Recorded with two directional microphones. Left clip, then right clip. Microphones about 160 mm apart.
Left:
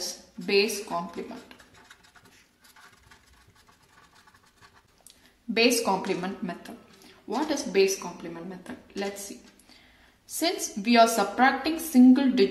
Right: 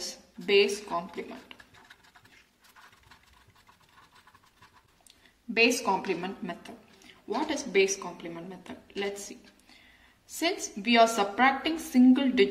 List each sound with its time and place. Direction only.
0.0 s a sound: 30° left (ahead or behind)
5.5 s a woman's voice: 35° left (ahead or behind)
10.3 s a woman's voice: 30° left (ahead or behind)